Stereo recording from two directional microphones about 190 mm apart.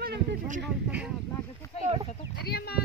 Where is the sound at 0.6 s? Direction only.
5° right (ahead or behind).